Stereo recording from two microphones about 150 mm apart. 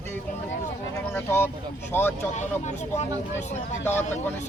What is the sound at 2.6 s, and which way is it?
Speech, 50° left (ahead or behind).